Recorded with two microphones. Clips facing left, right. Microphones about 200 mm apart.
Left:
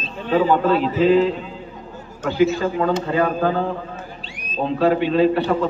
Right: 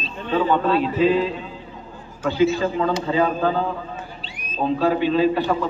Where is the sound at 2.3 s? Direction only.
50° left (ahead or behind).